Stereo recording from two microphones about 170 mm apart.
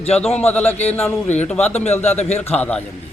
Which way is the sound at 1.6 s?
40° left (ahead or behind).